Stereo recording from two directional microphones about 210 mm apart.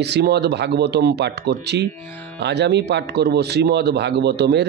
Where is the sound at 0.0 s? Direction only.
50° right (ahead or behind).